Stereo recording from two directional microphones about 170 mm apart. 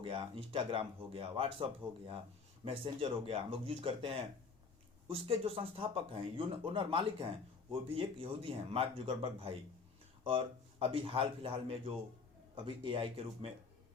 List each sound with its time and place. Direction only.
0.0 s speech: 30° right (ahead or behind)
2.6 s speech: 30° right (ahead or behind)